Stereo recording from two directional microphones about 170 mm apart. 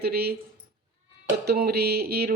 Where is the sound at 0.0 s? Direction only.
65° right (ahead or behind).